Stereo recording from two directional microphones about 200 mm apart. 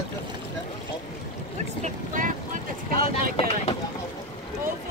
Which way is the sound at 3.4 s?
30° left (ahead or behind).